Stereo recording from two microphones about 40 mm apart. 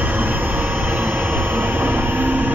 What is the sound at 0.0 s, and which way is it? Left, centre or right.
Vehicle, right.